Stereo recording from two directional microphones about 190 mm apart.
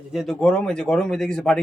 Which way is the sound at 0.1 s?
Centre (ahead or behind).